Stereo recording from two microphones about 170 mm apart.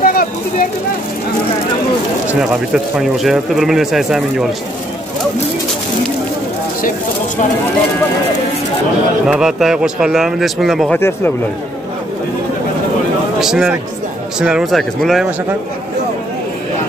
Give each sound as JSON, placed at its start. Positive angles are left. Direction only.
{"t": 0.0, "sound": "a sound", "side_deg": 55}
{"t": 2.2, "sound": "a man's voice", "side_deg": -5}
{"t": 9.3, "sound": "a man's voice", "side_deg": -5}
{"t": 11.0, "sound": "speech", "side_deg": 15}
{"t": 13.4, "sound": "a man's voice", "side_deg": -5}